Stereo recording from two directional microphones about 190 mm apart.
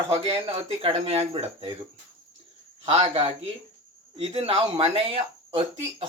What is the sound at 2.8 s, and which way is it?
Speech, 30° right (ahead or behind).